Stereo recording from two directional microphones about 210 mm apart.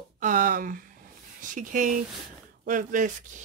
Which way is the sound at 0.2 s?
40° right (ahead or behind).